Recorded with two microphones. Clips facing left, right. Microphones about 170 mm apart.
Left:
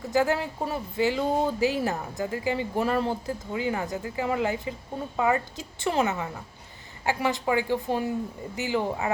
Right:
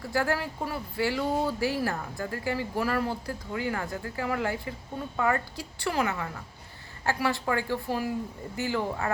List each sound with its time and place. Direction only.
0.0 s speech: 20° left (ahead or behind)